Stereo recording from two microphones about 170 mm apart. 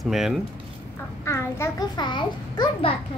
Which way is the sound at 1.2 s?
15° left (ahead or behind).